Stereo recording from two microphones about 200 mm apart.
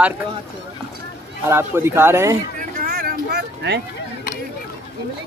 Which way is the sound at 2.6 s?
45° right (ahead or behind).